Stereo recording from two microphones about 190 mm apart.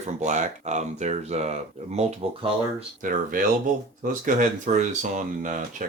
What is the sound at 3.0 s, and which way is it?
Speech, 45° right (ahead or behind).